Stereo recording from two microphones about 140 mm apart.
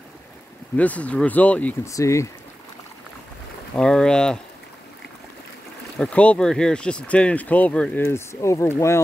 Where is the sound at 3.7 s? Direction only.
5° left (ahead or behind).